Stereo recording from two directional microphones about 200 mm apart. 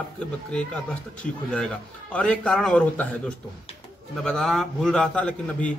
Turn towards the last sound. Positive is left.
turn(degrees=5)  # may be behind; listen again after turning